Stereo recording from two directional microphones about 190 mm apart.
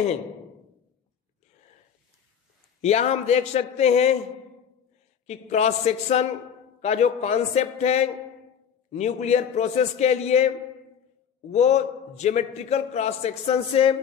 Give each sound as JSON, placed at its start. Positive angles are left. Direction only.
{"t": 2.8, "sound": "a man's voice", "side_deg": 35}
{"t": 5.2, "sound": "a man's voice", "side_deg": 35}